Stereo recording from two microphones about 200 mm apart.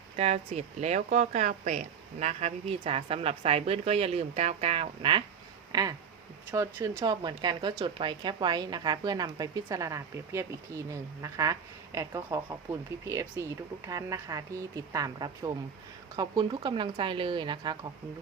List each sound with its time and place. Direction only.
0.2 s speech: 35° right (ahead or behind)
5.7 s a woman's voice: 15° right (ahead or behind)